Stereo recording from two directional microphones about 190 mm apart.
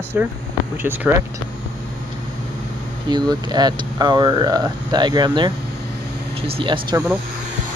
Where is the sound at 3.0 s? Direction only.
20° right (ahead or behind).